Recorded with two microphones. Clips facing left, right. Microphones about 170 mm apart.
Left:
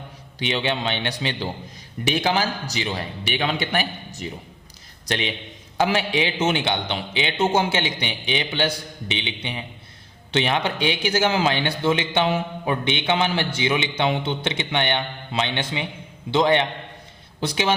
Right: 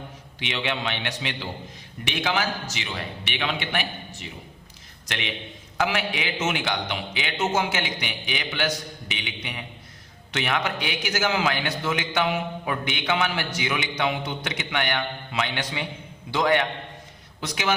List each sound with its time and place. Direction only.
0.3 s a man's voice: 35° left (ahead or behind)